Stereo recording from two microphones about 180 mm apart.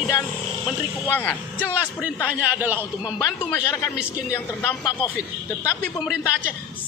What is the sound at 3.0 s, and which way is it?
Speech, 20° left (ahead or behind).